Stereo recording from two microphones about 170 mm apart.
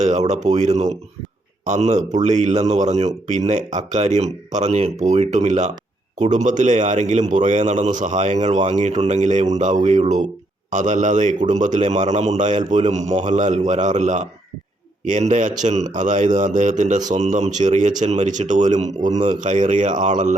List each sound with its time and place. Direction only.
0.0 s speech: 40° right (ahead or behind)